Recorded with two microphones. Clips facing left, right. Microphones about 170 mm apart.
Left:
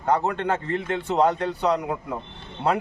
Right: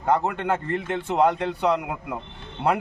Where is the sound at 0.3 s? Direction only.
10° right (ahead or behind).